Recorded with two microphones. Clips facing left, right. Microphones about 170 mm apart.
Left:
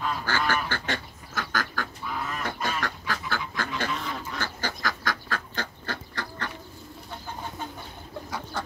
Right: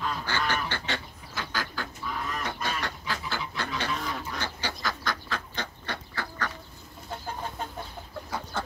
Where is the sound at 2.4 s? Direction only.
50° left (ahead or behind).